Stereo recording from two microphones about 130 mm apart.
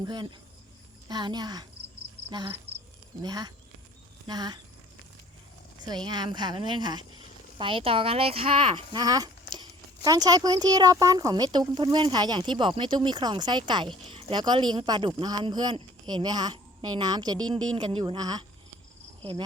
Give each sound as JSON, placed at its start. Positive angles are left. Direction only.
{"t": 0.0, "sound": "speech", "side_deg": -35}
{"t": 6.1, "sound": "speech", "side_deg": -35}